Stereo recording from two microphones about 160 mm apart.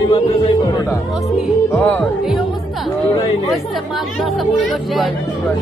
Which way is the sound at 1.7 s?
Centre (ahead or behind).